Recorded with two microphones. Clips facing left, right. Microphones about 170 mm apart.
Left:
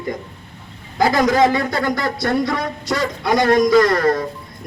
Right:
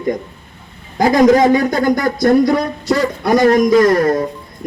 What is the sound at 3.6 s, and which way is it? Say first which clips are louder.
Speech: right 3 dB; 20° right (ahead or behind).